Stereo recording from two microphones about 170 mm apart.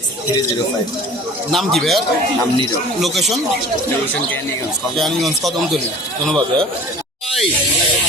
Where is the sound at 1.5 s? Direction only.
Centre (ahead or behind).